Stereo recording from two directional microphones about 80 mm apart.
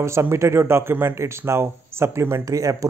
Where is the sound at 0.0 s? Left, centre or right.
Right.